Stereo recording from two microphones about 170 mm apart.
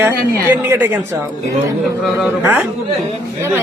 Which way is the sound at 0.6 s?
10° right (ahead or behind).